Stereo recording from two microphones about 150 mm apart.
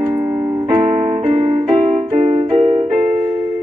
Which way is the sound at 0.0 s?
35° right (ahead or behind).